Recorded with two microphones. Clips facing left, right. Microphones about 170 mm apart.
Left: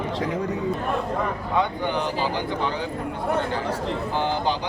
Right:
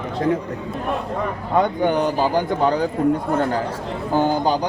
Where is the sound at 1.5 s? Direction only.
45° right (ahead or behind).